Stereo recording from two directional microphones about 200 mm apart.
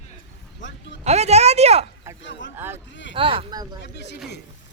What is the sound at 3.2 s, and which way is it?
Speech, 25° right (ahead or behind).